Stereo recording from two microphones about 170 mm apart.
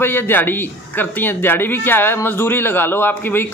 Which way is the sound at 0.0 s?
15° left (ahead or behind).